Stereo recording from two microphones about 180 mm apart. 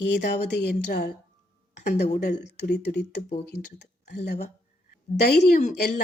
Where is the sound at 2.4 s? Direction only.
65° left (ahead or behind).